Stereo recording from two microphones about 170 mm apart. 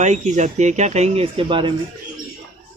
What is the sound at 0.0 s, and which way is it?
Speech, 45° right (ahead or behind).